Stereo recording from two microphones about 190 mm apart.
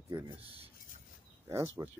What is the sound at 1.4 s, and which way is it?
Speech, 15° right (ahead or behind).